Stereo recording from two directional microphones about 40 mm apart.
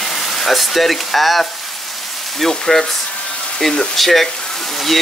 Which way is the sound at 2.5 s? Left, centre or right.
Centre.